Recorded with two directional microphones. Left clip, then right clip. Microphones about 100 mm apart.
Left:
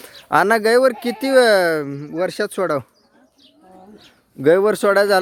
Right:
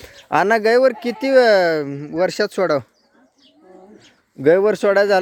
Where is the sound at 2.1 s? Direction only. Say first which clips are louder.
Right 3 dB; 20° right (ahead or behind).